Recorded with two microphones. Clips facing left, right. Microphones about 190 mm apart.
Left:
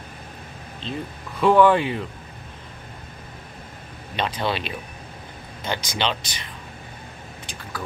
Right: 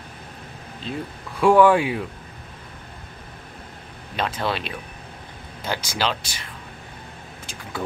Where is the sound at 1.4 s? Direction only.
10° right (ahead or behind).